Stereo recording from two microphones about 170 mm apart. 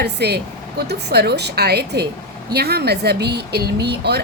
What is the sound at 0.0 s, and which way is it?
A woman's voice, 75° right (ahead or behind).